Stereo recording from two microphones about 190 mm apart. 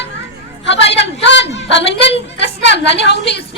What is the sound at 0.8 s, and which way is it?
A woman's voice, 70° left (ahead or behind).